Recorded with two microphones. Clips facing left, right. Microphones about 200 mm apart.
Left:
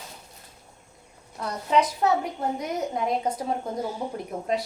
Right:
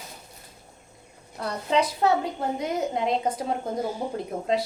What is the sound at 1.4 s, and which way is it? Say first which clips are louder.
A woman's voice: left 1 dB; 30° right (ahead or behind).